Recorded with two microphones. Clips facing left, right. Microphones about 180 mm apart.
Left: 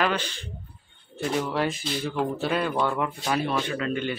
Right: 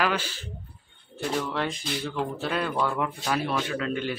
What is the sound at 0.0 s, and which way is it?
Speech, 5° right (ahead or behind).